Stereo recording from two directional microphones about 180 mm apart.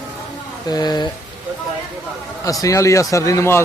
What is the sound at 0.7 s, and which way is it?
Speech, 20° left (ahead or behind).